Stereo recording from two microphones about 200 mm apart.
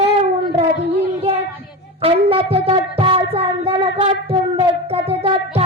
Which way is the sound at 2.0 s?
30° right (ahead or behind).